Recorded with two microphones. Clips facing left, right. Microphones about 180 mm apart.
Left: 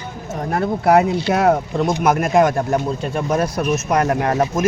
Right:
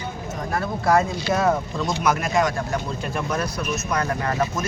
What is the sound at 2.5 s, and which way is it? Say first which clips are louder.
Speech: left 7 dB; 40° left (ahead or behind).